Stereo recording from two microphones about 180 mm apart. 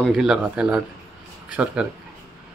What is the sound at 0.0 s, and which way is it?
Speech, centre (ahead or behind).